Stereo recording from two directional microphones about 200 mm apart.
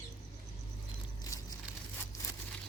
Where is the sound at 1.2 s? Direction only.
20° left (ahead or behind).